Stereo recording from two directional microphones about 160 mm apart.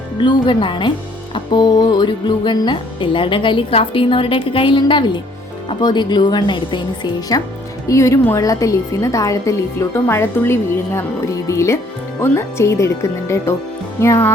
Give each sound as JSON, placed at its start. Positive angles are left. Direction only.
{"t": 0.2, "sound": "a woman's voice", "side_deg": 30}